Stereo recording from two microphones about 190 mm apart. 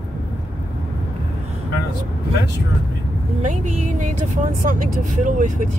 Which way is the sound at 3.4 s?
40° right (ahead or behind).